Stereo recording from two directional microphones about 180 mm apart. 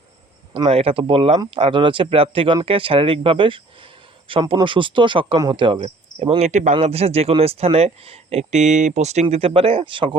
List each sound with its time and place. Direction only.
0.5 s speech: 30° right (ahead or behind)